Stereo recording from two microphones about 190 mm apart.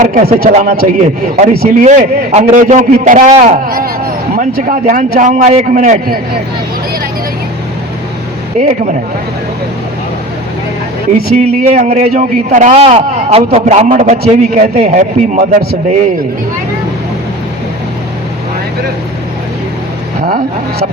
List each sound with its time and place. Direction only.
0.0 s a man's voice: 40° right (ahead or behind)
3.7 s speech: 50° right (ahead or behind)
8.6 s a man's voice: 40° right (ahead or behind)
11.7 s a man's voice: 40° right (ahead or behind)
20.2 s speech: 50° right (ahead or behind)